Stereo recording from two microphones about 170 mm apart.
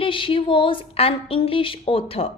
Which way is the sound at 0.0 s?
30° left (ahead or behind).